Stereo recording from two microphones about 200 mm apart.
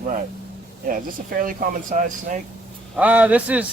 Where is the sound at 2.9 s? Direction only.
5° right (ahead or behind).